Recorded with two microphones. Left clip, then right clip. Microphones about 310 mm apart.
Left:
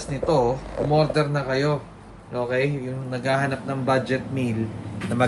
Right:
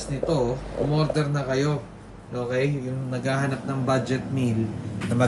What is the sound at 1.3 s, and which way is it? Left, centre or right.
Speech, centre.